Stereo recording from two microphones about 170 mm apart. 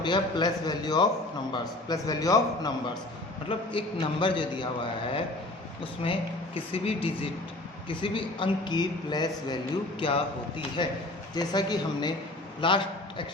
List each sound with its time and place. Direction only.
0.0 s a man's voice: 25° left (ahead or behind)
6.0 s a woman's voice: 35° left (ahead or behind)